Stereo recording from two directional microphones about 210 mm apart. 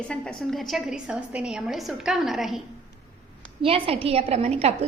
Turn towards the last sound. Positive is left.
turn(degrees=-30)  # may be behind; listen again after turning